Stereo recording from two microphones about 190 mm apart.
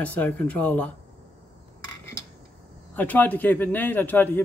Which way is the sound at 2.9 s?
10° left (ahead or behind).